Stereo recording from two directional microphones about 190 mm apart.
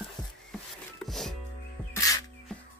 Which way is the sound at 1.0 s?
Centre (ahead or behind).